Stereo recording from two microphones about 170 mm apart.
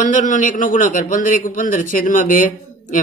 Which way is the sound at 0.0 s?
45° left (ahead or behind).